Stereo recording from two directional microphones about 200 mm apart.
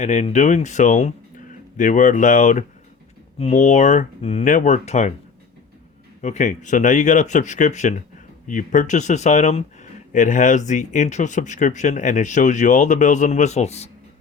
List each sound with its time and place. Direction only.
0.0 s speech: 35° left (ahead or behind)
6.2 s speech: 35° left (ahead or behind)